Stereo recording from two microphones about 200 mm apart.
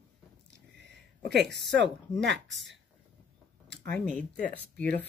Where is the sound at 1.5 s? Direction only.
60° right (ahead or behind).